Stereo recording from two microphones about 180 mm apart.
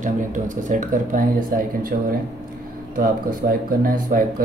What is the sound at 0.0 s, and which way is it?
Speech, 45° right (ahead or behind).